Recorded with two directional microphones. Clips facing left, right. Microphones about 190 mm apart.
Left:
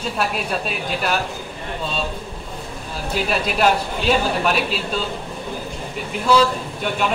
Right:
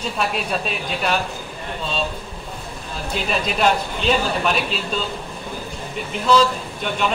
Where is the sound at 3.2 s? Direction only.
5° left (ahead or behind).